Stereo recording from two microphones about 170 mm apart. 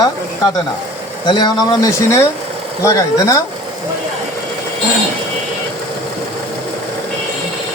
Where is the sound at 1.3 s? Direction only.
25° left (ahead or behind).